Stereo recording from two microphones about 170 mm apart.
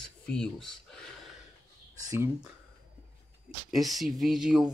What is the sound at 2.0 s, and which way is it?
Speech, 20° right (ahead or behind).